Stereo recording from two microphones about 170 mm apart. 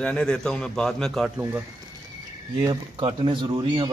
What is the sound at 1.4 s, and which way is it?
Speech, 10° right (ahead or behind).